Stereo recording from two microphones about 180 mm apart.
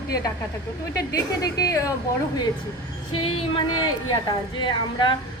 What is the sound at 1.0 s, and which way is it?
Speech, 20° left (ahead or behind).